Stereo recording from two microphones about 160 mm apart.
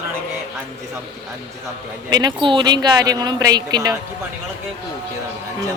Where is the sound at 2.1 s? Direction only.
25° right (ahead or behind).